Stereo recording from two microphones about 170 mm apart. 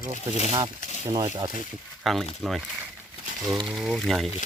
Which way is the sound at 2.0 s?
Centre (ahead or behind).